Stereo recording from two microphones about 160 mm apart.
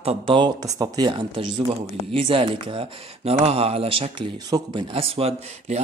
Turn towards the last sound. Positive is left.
turn(degrees=-45)  # may be behind; listen again after turning